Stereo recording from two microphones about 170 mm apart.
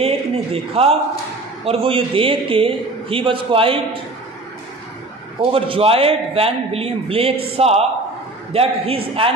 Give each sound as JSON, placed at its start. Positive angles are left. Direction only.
{"t": 0.0, "sound": "a man's voice", "side_deg": -35}
{"t": 5.5, "sound": "a man's voice", "side_deg": -35}